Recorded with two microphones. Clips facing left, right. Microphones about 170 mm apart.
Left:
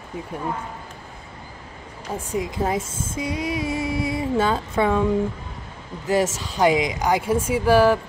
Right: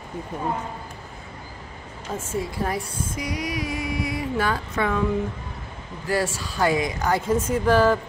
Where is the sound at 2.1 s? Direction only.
15° left (ahead or behind).